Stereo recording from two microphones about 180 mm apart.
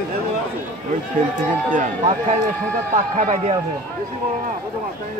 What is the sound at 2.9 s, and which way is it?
Speech, 40° right (ahead or behind).